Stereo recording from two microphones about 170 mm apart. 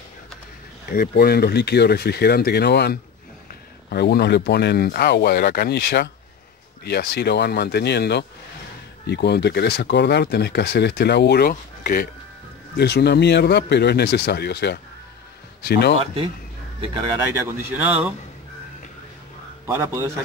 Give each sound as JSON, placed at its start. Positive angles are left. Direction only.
{"t": 0.8, "sound": "speech", "side_deg": 60}
{"t": 12.7, "sound": "speech", "side_deg": 75}
{"t": 17.3, "sound": "speech", "side_deg": -15}
{"t": 19.6, "sound": "a man's voice", "side_deg": -15}